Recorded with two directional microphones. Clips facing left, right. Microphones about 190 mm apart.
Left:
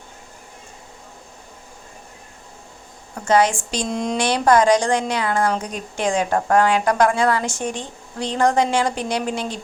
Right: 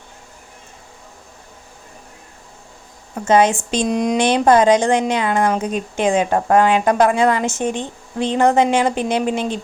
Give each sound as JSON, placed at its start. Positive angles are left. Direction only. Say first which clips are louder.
{"t": 3.2, "sound": "speech", "louder": "right 3 dB", "side_deg": -20}